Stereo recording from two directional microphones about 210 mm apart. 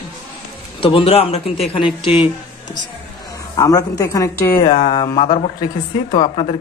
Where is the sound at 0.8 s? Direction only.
25° left (ahead or behind).